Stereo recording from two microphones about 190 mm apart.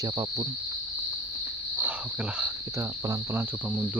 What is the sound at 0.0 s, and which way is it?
Cricket, 20° right (ahead or behind).